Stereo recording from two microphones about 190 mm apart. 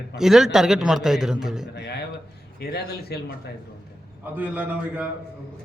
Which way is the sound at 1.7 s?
60° left (ahead or behind).